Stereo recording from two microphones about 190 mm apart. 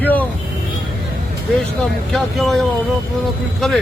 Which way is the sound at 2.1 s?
Centre (ahead or behind).